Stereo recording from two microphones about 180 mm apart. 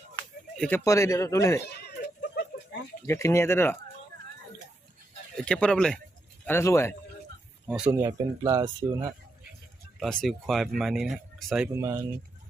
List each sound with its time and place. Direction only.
0.9 s speech: 20° left (ahead or behind)
2.2 s a sound: 65° left (ahead or behind)
3.1 s speech: 15° left (ahead or behind)
5.5 s speech: 5° left (ahead or behind)
7.7 s speech: 10° right (ahead or behind)
10.0 s speech: 5° left (ahead or behind)
11.7 s speech: 15° right (ahead or behind)